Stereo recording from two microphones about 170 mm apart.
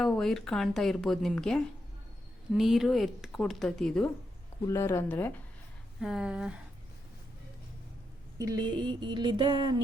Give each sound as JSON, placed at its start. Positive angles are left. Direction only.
{"t": 0.0, "sound": "a woman's voice", "side_deg": 0}
{"t": 4.6, "sound": "speech", "side_deg": 15}
{"t": 6.0, "sound": "a woman's voice", "side_deg": 0}
{"t": 8.4, "sound": "music", "side_deg": -20}